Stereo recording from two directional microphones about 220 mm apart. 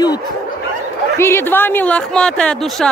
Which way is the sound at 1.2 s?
10° left (ahead or behind).